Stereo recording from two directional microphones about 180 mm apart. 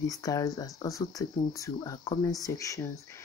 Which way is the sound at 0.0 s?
20° left (ahead or behind).